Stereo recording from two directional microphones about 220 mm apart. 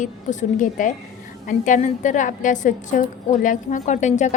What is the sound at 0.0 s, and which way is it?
A woman's voice, 35° left (ahead or behind).